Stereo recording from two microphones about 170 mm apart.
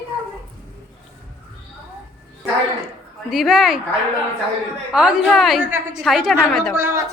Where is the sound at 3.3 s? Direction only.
Centre (ahead or behind).